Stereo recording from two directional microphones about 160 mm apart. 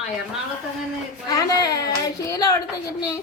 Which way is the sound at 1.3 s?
25° left (ahead or behind).